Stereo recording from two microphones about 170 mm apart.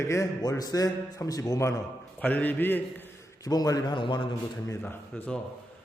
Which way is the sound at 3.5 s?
20° left (ahead or behind).